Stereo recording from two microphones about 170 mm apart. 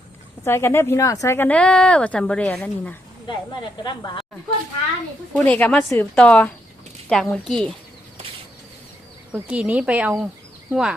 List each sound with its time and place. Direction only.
0.4 s speech: 15° left (ahead or behind)
3.2 s speech: 25° left (ahead or behind)
5.4 s a woman's voice: 10° left (ahead or behind)
9.3 s speech: 10° right (ahead or behind)